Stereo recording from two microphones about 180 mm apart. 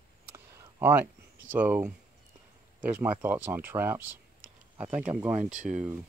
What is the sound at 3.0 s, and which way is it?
Speech, 10° right (ahead or behind).